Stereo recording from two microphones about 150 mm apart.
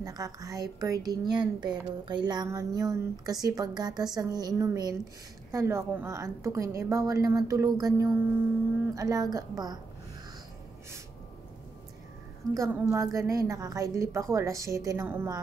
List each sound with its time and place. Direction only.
0.0 s a woman's voice: 25° right (ahead or behind)
12.5 s a woman's voice: 15° right (ahead or behind)